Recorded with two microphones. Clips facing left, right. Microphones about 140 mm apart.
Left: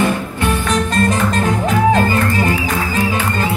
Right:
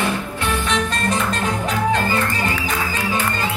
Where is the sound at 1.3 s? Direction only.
50° left (ahead or behind).